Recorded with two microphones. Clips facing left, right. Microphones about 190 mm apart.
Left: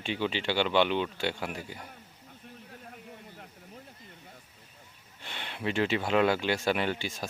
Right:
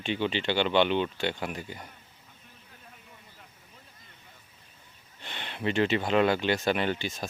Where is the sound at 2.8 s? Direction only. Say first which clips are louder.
Left 7 dB; 55° left (ahead or behind).